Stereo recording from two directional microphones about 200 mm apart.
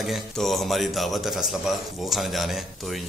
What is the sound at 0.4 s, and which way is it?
Speech, centre (ahead or behind).